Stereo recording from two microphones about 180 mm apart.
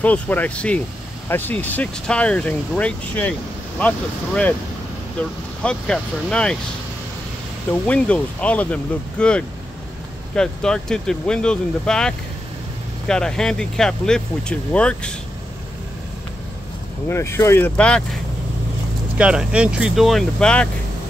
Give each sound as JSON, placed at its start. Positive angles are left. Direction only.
{"t": 0.0, "sound": "speech", "side_deg": 10}
{"t": 5.6, "sound": "speech", "side_deg": 5}
{"t": 7.8, "sound": "speech", "side_deg": 5}
{"t": 17.1, "sound": "speech", "side_deg": 15}
{"t": 19.1, "sound": "speech", "side_deg": -5}